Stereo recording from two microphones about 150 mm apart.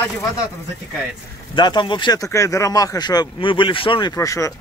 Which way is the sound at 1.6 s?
30° left (ahead or behind).